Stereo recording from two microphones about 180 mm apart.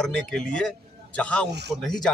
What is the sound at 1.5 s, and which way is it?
Speech, 70° right (ahead or behind).